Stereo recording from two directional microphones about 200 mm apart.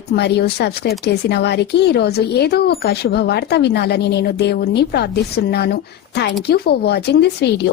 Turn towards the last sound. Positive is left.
turn(degrees=55)  # may be behind; listen again after turning